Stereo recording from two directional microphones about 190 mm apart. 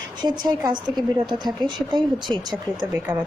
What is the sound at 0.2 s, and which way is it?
Speech, 20° right (ahead or behind).